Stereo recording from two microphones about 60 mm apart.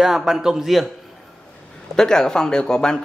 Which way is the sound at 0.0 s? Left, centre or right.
Centre.